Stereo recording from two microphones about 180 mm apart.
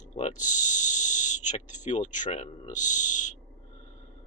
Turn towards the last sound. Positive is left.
turn(degrees=45)  # may be behind; listen again after turning